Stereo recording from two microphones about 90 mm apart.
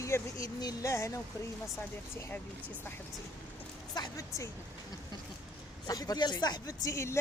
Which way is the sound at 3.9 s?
45° left (ahead or behind).